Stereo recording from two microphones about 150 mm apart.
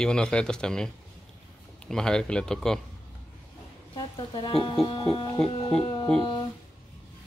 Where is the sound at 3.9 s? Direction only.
30° left (ahead or behind).